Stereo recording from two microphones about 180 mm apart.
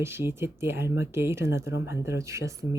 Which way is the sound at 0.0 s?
15° right (ahead or behind).